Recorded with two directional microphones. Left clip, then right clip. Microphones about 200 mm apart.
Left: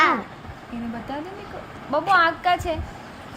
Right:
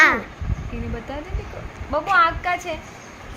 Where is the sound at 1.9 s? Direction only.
Centre (ahead or behind).